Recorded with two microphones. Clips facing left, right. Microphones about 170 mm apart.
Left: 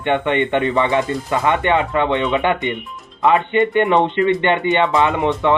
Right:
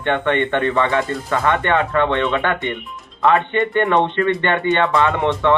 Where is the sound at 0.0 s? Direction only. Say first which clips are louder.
Left 1 dB; 15° left (ahead or behind).